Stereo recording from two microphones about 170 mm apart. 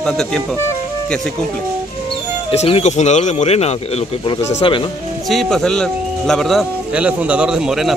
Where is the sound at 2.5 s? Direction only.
40° left (ahead or behind).